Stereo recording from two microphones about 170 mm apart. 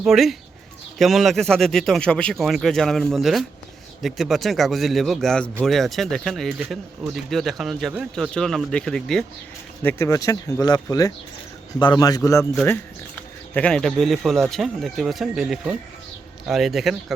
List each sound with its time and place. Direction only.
0.0 s speech: centre (ahead or behind)
9.8 s speech: 15° left (ahead or behind)
13.5 s speech: 5° left (ahead or behind)